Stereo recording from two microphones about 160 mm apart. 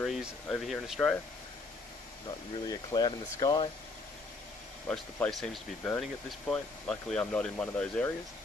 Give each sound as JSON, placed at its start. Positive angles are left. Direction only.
{"t": 0.0, "sound": "speech", "side_deg": 0}
{"t": 2.2, "sound": "speech", "side_deg": 25}
{"t": 4.8, "sound": "speech", "side_deg": 5}